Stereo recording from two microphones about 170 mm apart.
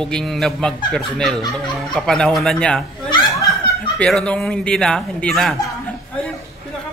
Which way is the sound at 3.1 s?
20° left (ahead or behind).